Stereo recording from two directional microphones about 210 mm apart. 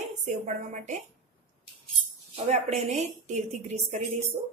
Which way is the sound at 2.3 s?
30° right (ahead or behind).